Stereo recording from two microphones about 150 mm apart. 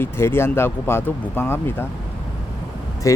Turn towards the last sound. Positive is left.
turn(degrees=20)  # may be behind; listen again after turning